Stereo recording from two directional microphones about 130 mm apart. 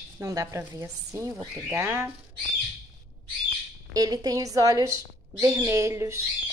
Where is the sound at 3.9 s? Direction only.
30° right (ahead or behind).